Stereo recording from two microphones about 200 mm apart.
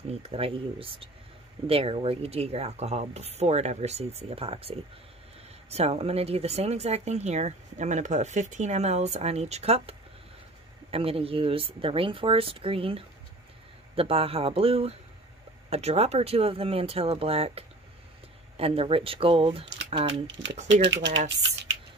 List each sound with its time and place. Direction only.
0.1 s speech: 30° right (ahead or behind)
20.8 s speech: 60° right (ahead or behind)